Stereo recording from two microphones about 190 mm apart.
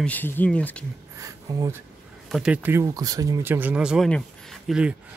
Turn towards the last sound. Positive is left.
turn(degrees=0)  # may be behind; listen again after turning